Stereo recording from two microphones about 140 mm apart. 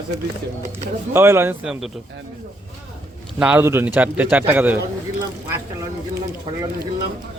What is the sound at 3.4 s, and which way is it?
A man's voice, 10° right (ahead or behind).